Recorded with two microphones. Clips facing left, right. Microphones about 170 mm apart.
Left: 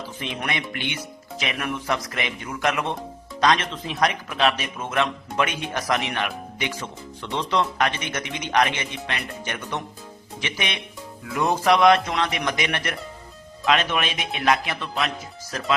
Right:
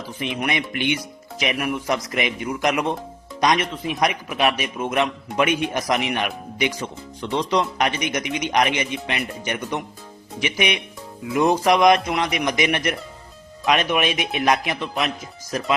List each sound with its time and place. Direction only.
0.2 s a man's voice: 15° right (ahead or behind)